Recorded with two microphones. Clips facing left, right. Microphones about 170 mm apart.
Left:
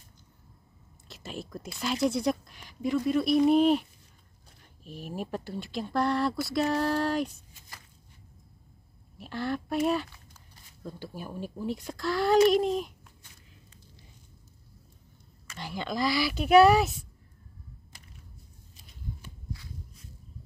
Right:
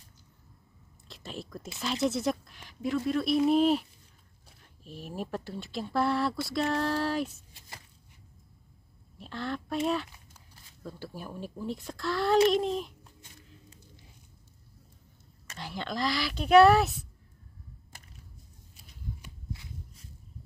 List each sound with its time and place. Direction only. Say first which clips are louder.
1.0 s speech: left 2 dB; centre (ahead or behind)
9.2 s speech: left 3 dB; 5° left (ahead or behind)
15.5 s speech: left 2 dB; centre (ahead or behind)
19.2 s walk: left 1 dB; 20° right (ahead or behind)